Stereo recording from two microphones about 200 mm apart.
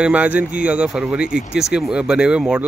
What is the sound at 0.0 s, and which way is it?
Speech, 5° right (ahead or behind).